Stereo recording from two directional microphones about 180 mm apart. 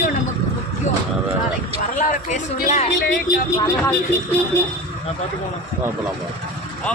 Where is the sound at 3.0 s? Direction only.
55° left (ahead or behind).